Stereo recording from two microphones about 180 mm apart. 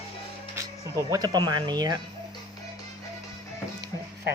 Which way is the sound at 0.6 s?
20° right (ahead or behind).